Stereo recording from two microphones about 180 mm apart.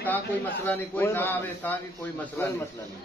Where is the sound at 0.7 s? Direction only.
10° left (ahead or behind).